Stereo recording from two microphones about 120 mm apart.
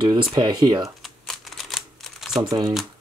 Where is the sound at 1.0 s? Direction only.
Centre (ahead or behind).